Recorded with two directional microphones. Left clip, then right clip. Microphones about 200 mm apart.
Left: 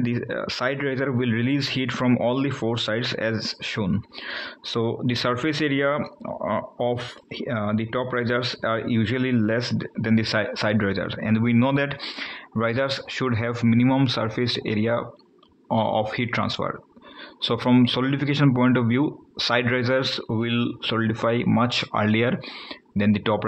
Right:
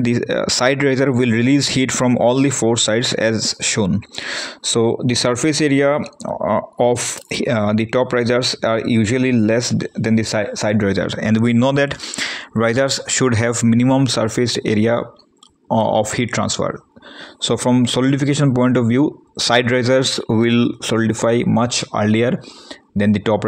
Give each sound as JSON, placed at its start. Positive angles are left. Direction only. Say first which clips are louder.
{"t": 0.0, "sound": "speech", "louder": "right 9 dB", "side_deg": -45}